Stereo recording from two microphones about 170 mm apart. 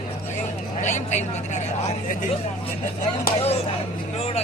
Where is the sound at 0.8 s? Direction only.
45° left (ahead or behind).